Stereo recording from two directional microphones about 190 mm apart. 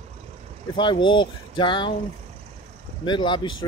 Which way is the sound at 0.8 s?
25° left (ahead or behind).